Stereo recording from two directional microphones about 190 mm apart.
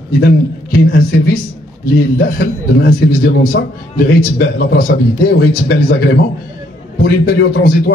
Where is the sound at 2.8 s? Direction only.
55° left (ahead or behind).